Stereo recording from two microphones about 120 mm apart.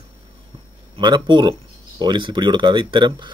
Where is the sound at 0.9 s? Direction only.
40° right (ahead or behind).